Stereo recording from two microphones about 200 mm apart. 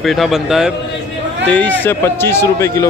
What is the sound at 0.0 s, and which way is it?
A man's voice, centre (ahead or behind).